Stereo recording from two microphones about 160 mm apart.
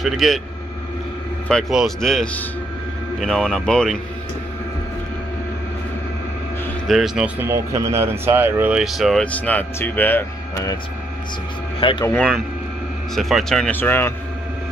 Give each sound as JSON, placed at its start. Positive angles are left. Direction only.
{"t": 0.0, "sound": "speech", "side_deg": 0}
{"t": 1.5, "sound": "speech", "side_deg": 0}
{"t": 6.9, "sound": "speech", "side_deg": 0}
{"t": 7.3, "sound": "speech", "side_deg": -15}
{"t": 11.8, "sound": "speech", "side_deg": 35}
{"t": 13.1, "sound": "speech", "side_deg": 0}